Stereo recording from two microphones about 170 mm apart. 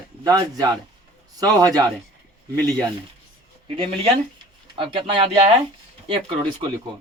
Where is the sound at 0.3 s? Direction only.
20° right (ahead or behind).